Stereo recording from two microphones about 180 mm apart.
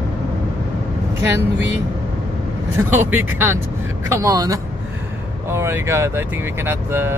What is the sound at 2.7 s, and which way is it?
Speech, 10° right (ahead or behind).